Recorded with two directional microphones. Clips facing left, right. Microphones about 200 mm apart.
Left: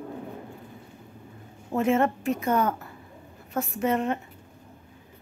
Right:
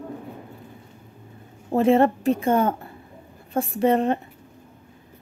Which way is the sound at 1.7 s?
35° right (ahead or behind).